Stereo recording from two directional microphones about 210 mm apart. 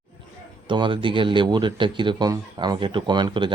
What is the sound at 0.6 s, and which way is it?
A man's voice, 25° right (ahead or behind).